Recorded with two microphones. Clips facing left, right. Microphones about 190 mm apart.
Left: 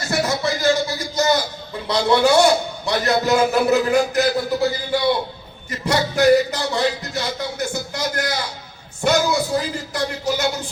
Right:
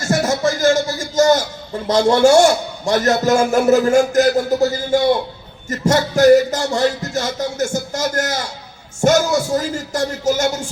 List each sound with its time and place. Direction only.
0.0 s music: 45° right (ahead or behind)
1.9 s a man's voice: 45° right (ahead or behind)